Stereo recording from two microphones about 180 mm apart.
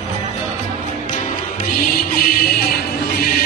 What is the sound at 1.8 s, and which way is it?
Music, 55° left (ahead or behind).